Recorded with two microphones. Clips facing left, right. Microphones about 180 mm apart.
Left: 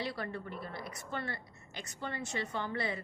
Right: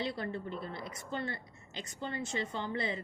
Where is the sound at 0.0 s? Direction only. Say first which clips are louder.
Right 2 dB; 25° right (ahead or behind).